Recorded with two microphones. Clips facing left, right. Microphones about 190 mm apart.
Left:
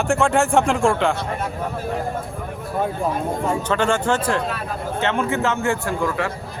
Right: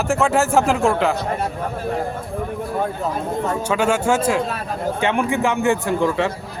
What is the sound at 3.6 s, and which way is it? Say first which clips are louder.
A man's voice: right 1 dB; 10° right (ahead or behind).